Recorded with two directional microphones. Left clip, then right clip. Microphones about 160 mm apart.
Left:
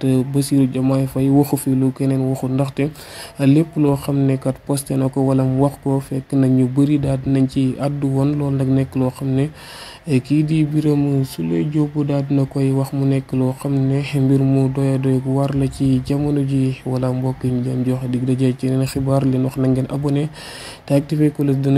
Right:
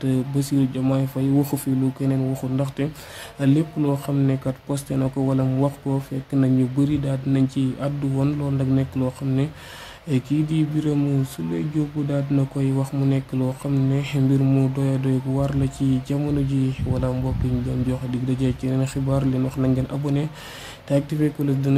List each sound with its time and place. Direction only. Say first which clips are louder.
0.0 s speech: left 6 dB; 30° left (ahead or behind)
12.1 s speech: left 4 dB; 30° left (ahead or behind)